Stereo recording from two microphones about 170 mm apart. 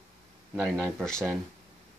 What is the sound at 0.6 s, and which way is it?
Speech, 10° right (ahead or behind).